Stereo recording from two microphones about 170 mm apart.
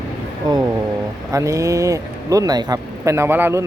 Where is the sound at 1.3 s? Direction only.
20° right (ahead or behind).